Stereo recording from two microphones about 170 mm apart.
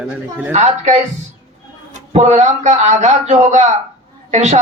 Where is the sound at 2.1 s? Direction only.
45° right (ahead or behind).